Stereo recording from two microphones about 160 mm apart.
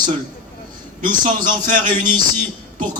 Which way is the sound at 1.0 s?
55° right (ahead or behind).